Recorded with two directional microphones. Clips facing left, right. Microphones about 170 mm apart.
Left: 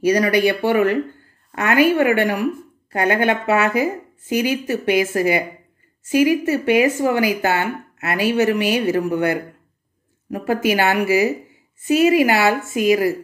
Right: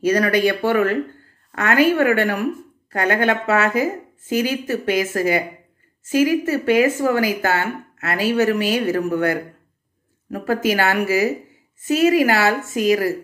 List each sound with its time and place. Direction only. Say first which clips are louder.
0.0 s speech: left 1 dB; 10° left (ahead or behind)